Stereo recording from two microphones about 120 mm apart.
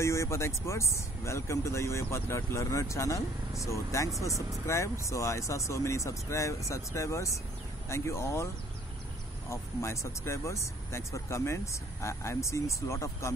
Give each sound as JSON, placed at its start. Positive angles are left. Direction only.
{"t": 0.0, "sound": "speech", "side_deg": 25}
{"t": 9.5, "sound": "speech", "side_deg": 25}